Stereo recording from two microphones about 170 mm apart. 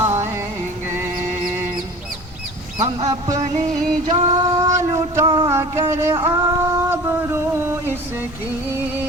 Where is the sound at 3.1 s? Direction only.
20° right (ahead or behind).